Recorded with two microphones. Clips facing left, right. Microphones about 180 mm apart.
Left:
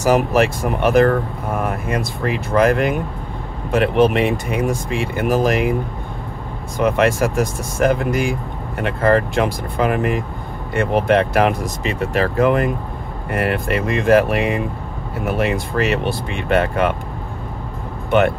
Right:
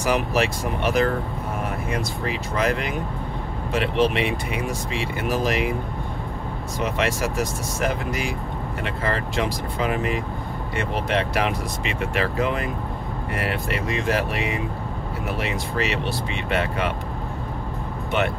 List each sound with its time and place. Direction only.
0.0 s speech: 45° left (ahead or behind)
6.8 s speech: 55° left (ahead or behind)